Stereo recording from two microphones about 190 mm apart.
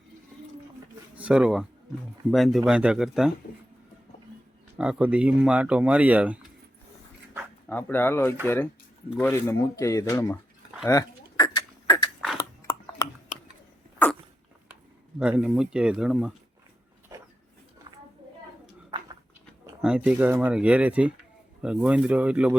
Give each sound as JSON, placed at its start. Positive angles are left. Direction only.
{"t": 1.1, "sound": "speech", "side_deg": -5}
{"t": 4.8, "sound": "speech", "side_deg": -5}
{"t": 7.7, "sound": "speech", "side_deg": 10}
{"t": 10.8, "sound": "a sound", "side_deg": 20}
{"t": 14.0, "sound": "dog", "side_deg": 10}
{"t": 15.2, "sound": "speech", "side_deg": -5}
{"t": 19.8, "sound": "speech", "side_deg": -5}